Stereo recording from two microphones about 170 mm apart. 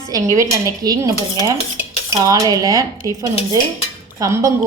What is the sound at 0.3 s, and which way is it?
Dishes, 20° right (ahead or behind).